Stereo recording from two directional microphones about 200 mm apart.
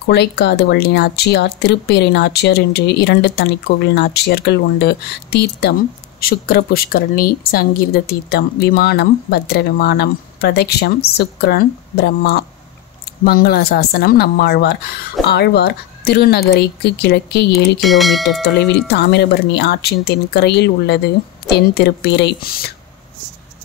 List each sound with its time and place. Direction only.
0.0 s a woman's voice: 55° left (ahead or behind)
17.8 s speech: centre (ahead or behind)
18.4 s speech: 55° left (ahead or behind)